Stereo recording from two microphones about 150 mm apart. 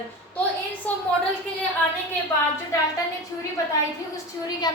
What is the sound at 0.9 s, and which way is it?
Speech, 10° left (ahead or behind).